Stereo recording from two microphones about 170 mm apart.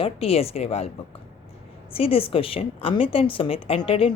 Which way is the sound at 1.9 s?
35° left (ahead or behind).